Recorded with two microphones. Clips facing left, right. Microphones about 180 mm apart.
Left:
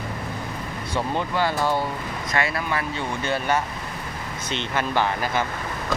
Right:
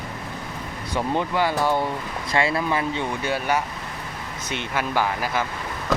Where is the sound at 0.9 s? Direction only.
15° right (ahead or behind).